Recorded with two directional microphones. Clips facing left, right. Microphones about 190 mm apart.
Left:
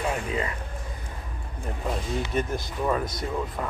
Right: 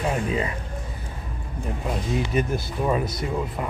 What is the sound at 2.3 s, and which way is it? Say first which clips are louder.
Speech: right 3 dB; 10° right (ahead or behind).